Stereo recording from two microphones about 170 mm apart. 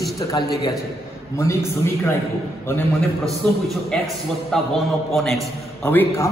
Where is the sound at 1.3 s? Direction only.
15° left (ahead or behind).